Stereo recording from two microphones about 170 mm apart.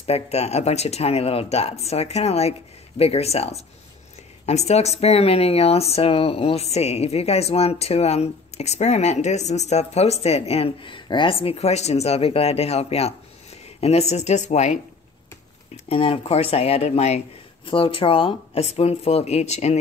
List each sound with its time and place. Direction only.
0.0 s speech: 40° left (ahead or behind)